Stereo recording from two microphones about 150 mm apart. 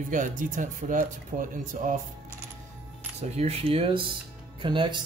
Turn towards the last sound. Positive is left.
turn(degrees=-35)  # may be behind; listen again after turning